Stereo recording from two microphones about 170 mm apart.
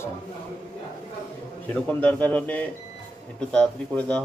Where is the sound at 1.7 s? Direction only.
10° left (ahead or behind).